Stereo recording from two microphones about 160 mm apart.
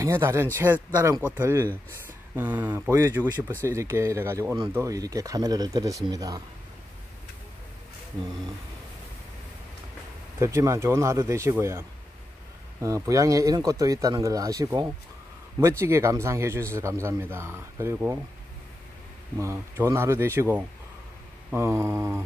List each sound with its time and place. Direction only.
0.0 s a man's voice: 15° right (ahead or behind)
10.4 s a man's voice: 20° right (ahead or behind)
12.8 s a man's voice: 20° right (ahead or behind)
19.3 s a man's voice: 15° right (ahead or behind)